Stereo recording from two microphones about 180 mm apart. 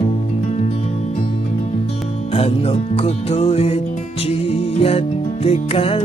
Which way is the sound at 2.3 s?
35° left (ahead or behind).